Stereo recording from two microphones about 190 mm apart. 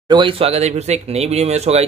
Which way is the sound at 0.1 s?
25° right (ahead or behind).